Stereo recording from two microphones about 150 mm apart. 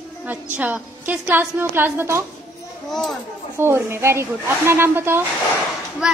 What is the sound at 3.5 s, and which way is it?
A woman's voice, 15° right (ahead or behind).